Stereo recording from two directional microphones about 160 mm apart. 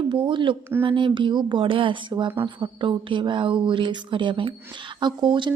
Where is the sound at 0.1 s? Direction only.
30° right (ahead or behind).